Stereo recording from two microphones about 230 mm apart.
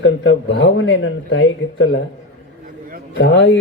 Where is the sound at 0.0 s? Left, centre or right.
Left.